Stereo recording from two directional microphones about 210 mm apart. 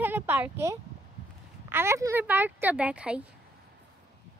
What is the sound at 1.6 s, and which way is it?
Speech, 10° right (ahead or behind).